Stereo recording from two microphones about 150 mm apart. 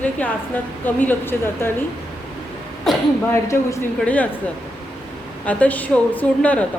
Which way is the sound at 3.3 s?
15° left (ahead or behind).